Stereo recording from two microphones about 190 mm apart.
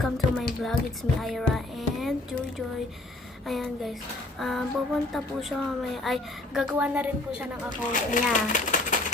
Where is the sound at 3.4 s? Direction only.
Centre (ahead or behind).